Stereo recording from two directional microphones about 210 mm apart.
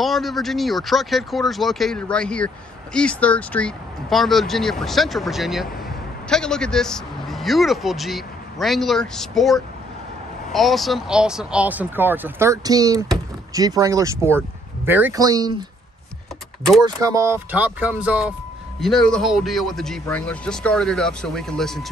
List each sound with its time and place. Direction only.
0.0 s a man's voice: centre (ahead or behind); by 15.5 s 20° right (ahead or behind)
16.8 s speech: 15° right (ahead or behind); by 21.8 s centre (ahead or behind)